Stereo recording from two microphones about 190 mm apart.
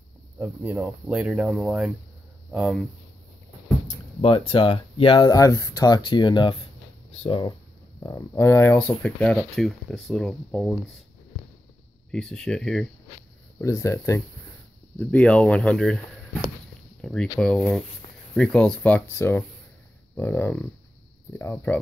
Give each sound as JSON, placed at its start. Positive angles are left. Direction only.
{"t": 0.4, "sound": "speech", "side_deg": -10}
{"t": 3.8, "sound": "speech", "side_deg": 30}
{"t": 12.1, "sound": "speech", "side_deg": 0}
{"t": 13.6, "sound": "speech", "side_deg": 15}